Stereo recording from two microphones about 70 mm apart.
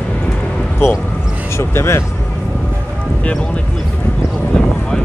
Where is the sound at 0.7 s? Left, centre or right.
Left.